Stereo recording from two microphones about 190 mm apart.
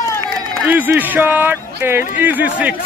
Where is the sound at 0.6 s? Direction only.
10° right (ahead or behind).